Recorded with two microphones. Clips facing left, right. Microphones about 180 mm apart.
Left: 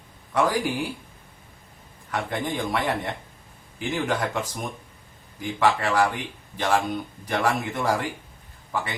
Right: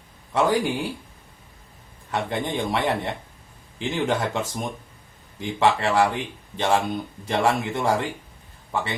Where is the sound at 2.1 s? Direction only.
25° right (ahead or behind).